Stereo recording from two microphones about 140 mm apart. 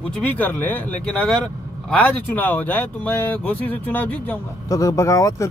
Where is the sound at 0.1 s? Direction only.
10° left (ahead or behind).